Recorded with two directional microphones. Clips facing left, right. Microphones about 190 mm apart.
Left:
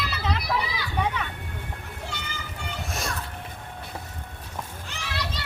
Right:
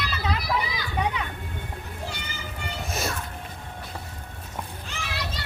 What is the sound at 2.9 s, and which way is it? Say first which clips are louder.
Music: right 3 dB; centre (ahead or behind).